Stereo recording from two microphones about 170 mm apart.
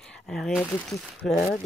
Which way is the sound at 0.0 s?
5° left (ahead or behind).